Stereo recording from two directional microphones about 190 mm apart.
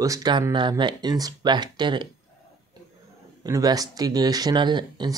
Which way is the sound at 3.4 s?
20° right (ahead or behind).